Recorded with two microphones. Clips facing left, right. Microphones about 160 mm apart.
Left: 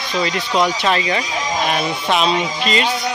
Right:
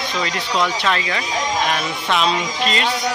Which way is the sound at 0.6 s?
25° left (ahead or behind).